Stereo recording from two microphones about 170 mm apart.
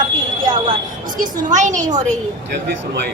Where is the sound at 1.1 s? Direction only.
45° right (ahead or behind).